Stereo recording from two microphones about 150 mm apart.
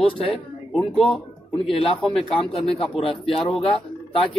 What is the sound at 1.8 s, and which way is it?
Speech, 5° left (ahead or behind).